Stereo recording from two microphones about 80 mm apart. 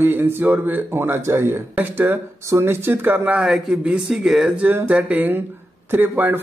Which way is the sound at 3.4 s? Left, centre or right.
Centre.